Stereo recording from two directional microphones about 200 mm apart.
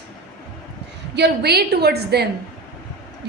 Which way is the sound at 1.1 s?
55° right (ahead or behind).